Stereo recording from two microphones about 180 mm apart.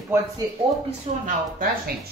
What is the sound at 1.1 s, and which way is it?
Speech, 40° right (ahead or behind).